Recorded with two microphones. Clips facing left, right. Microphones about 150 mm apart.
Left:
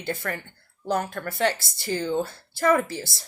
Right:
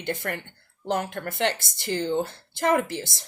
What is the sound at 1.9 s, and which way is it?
Speech, 45° left (ahead or behind).